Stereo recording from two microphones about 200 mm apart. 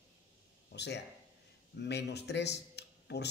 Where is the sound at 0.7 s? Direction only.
60° left (ahead or behind).